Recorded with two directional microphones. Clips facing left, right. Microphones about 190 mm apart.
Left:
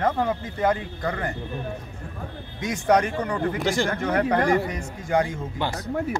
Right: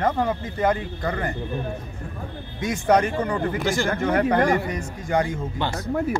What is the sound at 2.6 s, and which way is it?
Speech, 5° right (ahead or behind).